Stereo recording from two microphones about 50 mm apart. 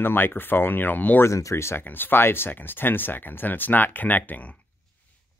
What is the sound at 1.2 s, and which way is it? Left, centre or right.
Speech, left.